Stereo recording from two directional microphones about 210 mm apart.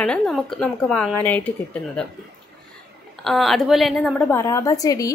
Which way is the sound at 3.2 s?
Centre (ahead or behind).